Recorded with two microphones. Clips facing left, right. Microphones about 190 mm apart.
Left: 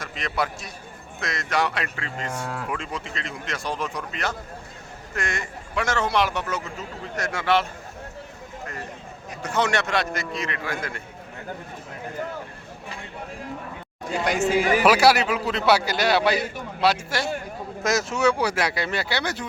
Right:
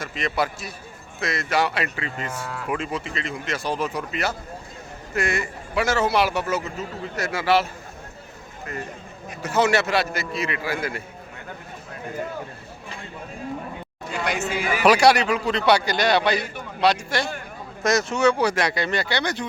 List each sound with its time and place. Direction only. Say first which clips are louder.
0.0 s a man's voice: right 3 dB; centre (ahead or behind)
9.4 s a man's voice: right 4 dB; 5° right (ahead or behind)
14.1 s speech: left 4 dB; 40° left (ahead or behind)
14.8 s a man's voice: right 4 dB; 5° left (ahead or behind)